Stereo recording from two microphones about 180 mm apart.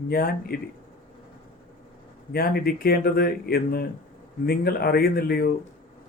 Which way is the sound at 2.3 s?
55° left (ahead or behind).